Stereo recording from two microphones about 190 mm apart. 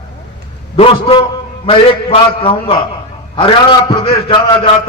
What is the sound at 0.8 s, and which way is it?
A man's voice, 25° left (ahead or behind).